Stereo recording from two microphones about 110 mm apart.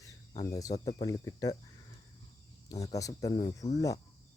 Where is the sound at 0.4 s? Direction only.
30° left (ahead or behind).